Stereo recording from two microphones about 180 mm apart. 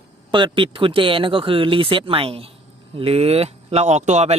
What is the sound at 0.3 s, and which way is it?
A man's voice, 25° right (ahead or behind).